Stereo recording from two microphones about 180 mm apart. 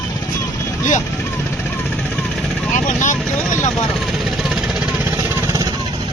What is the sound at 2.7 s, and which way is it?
Vehicle, 45° left (ahead or behind).